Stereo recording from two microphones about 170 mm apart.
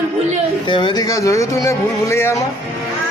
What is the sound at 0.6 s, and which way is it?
Speech, 30° left (ahead or behind).